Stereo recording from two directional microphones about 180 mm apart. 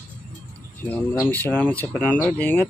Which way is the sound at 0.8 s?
10° left (ahead or behind).